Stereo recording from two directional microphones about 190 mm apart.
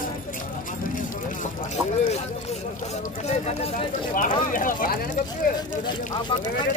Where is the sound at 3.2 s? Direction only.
35° left (ahead or behind).